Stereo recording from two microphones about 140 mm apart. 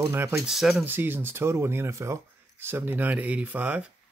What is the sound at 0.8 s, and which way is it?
Speech, 15° right (ahead or behind).